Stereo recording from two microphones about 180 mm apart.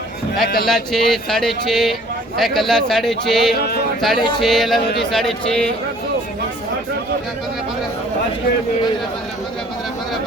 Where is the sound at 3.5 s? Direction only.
60° left (ahead or behind).